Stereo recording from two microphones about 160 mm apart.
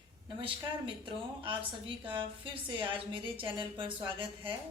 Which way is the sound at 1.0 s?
30° right (ahead or behind).